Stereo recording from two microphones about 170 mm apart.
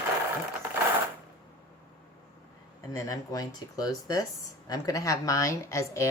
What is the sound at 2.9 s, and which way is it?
Speech, 20° left (ahead or behind).